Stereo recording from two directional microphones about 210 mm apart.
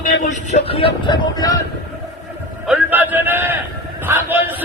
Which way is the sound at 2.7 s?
10° right (ahead or behind).